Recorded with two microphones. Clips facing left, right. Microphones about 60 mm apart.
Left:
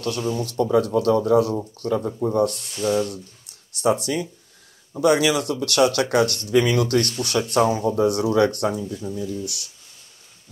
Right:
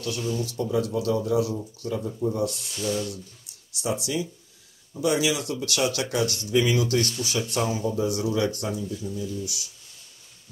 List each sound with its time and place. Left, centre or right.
0.2 s speech: left
0.5 s speech: left
2.8 s speech: left
3.7 s speech: left
8.8 s speech: left
9.1 s speech: left